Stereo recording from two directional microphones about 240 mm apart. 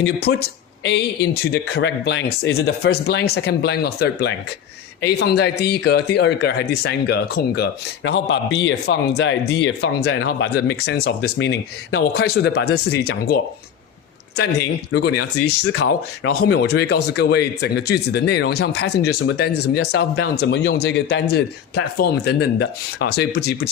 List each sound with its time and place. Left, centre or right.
0.0 s speech: left
15.4 s speech: left